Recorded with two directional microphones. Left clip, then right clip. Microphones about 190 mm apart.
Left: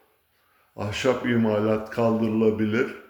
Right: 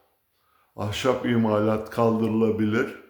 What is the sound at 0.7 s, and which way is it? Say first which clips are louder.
Speech: even; 25° right (ahead or behind).